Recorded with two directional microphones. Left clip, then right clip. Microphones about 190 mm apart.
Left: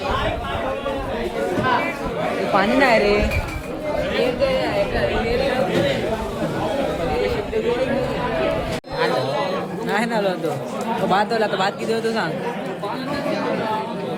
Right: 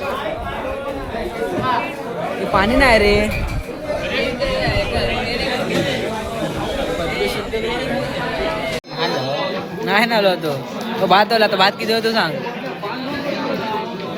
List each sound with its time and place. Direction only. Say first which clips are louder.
2.6 s a woman's voice: right 3 dB; 20° right (ahead or behind)
9.9 s a sound: right 6 dB; 20° right (ahead or behind)
11.1 s a man's voice: right 7 dB; 20° right (ahead or behind)